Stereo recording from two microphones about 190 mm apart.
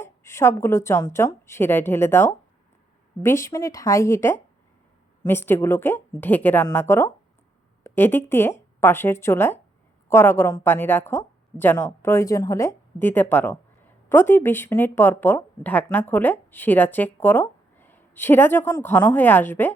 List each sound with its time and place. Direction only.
0.0 s speech: 15° left (ahead or behind)